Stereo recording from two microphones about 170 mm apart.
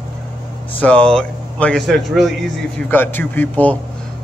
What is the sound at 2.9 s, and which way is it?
Speech, 10° left (ahead or behind).